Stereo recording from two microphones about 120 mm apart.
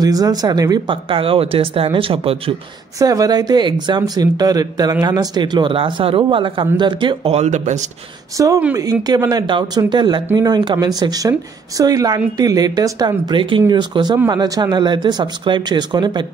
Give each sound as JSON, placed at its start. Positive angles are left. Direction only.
{"t": 0.0, "sound": "speech", "side_deg": -30}
{"t": 1.0, "sound": "speech", "side_deg": -45}
{"t": 3.0, "sound": "speech", "side_deg": -30}
{"t": 7.3, "sound": "speech", "side_deg": -85}
{"t": 8.4, "sound": "speech", "side_deg": -25}
{"t": 9.3, "sound": "speech", "side_deg": -35}